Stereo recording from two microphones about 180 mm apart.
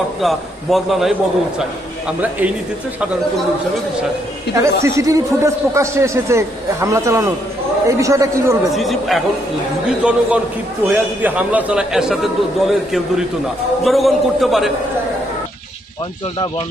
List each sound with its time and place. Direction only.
0.2 s a man's voice: centre (ahead or behind)
4.6 s speech: 15° right (ahead or behind)
8.7 s a man's voice: centre (ahead or behind)